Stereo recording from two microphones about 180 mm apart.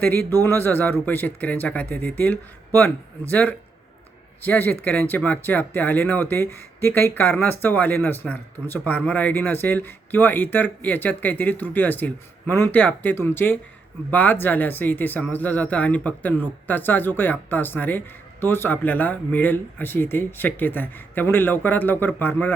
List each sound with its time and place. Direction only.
0.3 s speech: 10° left (ahead or behind)